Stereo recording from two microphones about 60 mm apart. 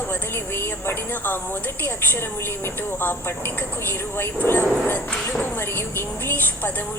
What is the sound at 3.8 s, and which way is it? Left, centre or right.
Speech, left.